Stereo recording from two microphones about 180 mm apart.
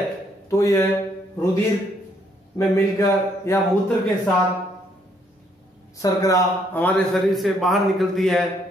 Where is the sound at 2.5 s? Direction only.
15° left (ahead or behind).